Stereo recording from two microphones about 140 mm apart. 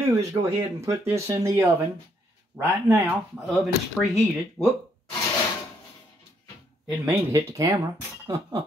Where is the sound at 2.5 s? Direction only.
10° right (ahead or behind).